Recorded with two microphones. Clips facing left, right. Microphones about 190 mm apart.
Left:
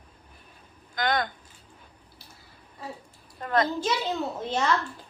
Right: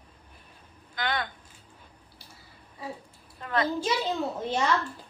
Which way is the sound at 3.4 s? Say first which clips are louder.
Left 3 dB; 45° left (ahead or behind).